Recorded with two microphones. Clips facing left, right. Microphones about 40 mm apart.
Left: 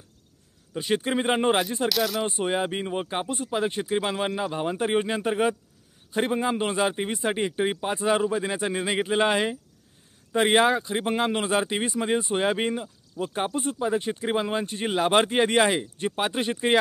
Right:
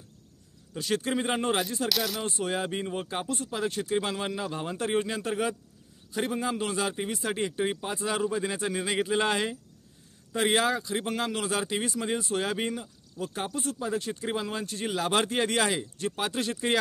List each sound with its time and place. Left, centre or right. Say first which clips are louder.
0.7 s speech: left 3 dB; left
1.9 s speech: left 5 dB; centre
2.2 s speech: left 4 dB; left